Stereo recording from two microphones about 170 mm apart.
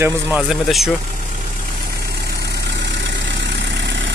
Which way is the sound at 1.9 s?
70° right (ahead or behind).